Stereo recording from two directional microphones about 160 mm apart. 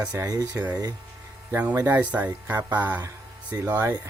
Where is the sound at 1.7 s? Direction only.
15° right (ahead or behind).